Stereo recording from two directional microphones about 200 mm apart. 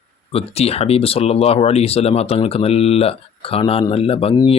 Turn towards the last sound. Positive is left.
turn(degrees=30)  # may be behind; listen again after turning